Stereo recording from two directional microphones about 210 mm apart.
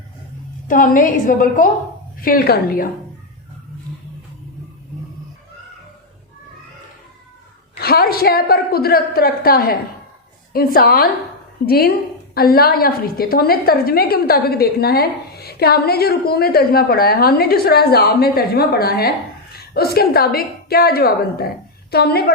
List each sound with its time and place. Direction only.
0.7 s a woman's voice: 40° left (ahead or behind)
7.8 s a woman's voice: 45° left (ahead or behind)